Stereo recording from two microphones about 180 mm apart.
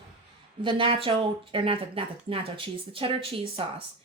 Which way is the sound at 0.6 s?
30° right (ahead or behind).